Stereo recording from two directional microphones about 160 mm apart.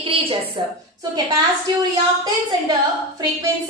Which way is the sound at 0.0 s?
35° right (ahead or behind).